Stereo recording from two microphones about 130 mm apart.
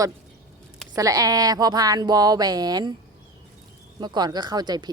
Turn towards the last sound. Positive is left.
turn(degrees=-30)  # may be behind; listen again after turning